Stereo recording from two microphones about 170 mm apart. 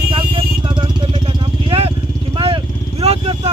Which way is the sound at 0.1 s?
30° right (ahead or behind).